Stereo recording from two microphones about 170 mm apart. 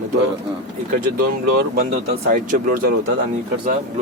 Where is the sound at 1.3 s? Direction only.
60° right (ahead or behind).